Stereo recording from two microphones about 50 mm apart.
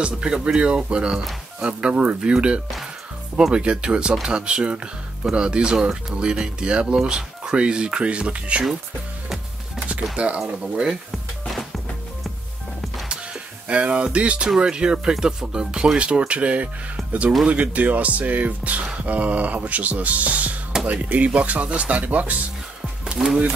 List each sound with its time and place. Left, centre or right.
0.0 s speech: centre
10.1 s speech: right
10.4 s speech: centre
13.1 s music: right
14.6 s speech: centre
23.2 s speech: centre